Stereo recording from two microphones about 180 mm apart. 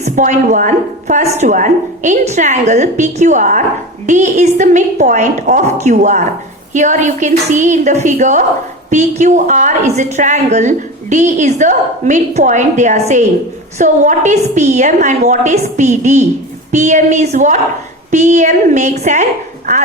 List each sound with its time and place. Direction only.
0.0 s a woman's voice: 40° right (ahead or behind)